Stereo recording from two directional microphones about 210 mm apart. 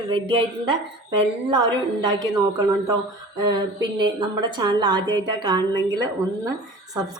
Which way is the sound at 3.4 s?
20° right (ahead or behind).